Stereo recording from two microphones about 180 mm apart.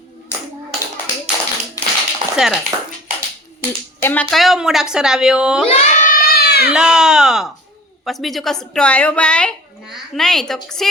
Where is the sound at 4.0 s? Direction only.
10° left (ahead or behind).